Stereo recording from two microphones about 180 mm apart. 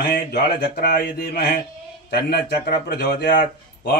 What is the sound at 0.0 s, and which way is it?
A man's voice, 60° left (ahead or behind).